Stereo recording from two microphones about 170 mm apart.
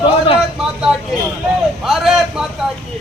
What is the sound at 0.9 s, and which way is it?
A man's voice, 5° right (ahead or behind).